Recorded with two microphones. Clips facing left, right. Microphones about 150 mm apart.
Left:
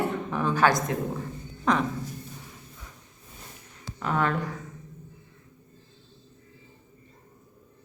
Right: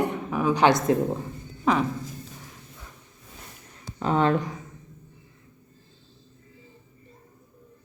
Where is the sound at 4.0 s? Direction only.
25° right (ahead or behind).